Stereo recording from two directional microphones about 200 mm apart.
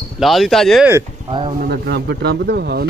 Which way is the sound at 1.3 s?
25° right (ahead or behind).